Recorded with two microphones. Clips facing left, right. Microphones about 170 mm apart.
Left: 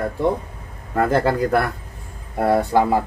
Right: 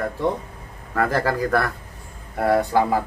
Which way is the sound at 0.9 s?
20° left (ahead or behind).